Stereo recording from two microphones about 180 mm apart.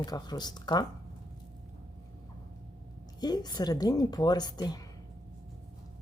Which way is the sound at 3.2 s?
20° left (ahead or behind).